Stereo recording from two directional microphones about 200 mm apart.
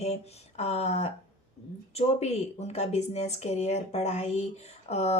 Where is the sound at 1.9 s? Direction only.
30° left (ahead or behind).